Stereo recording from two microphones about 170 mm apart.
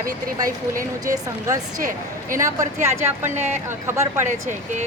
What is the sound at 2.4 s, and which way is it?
Speech, 20° right (ahead or behind).